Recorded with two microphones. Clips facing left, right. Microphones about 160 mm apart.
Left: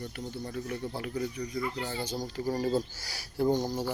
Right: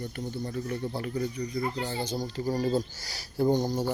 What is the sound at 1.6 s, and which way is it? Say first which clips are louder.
Speech: right 3 dB; 35° right (ahead or behind).